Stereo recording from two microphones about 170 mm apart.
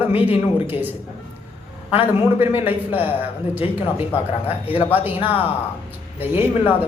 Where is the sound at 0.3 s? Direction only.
10° right (ahead or behind).